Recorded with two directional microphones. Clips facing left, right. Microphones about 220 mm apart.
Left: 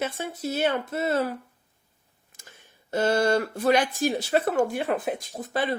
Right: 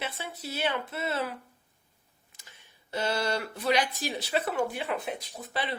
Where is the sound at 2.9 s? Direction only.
50° left (ahead or behind).